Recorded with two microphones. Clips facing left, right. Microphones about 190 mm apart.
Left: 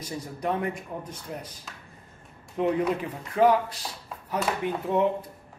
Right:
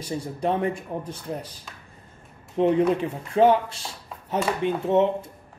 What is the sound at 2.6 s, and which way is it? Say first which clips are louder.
Speech: right 5 dB; 30° right (ahead or behind).